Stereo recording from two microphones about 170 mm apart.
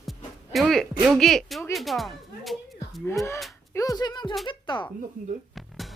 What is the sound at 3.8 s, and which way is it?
Speech, 20° left (ahead or behind).